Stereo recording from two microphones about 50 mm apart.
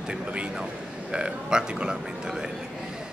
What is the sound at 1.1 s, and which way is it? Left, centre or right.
Speech, centre.